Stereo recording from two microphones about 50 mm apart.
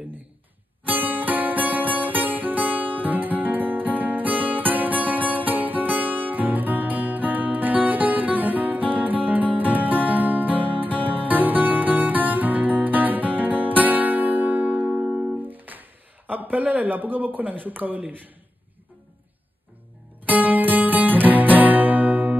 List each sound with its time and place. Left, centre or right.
0.8 s music: right
14.9 s music: right
15.4 s music: right
20.2 s music: right